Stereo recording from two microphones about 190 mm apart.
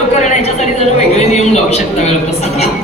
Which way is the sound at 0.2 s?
35° left (ahead or behind).